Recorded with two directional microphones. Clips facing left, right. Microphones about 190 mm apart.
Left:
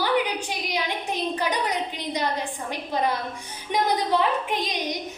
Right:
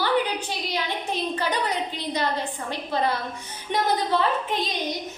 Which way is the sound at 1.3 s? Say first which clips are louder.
Even; 15° left (ahead or behind).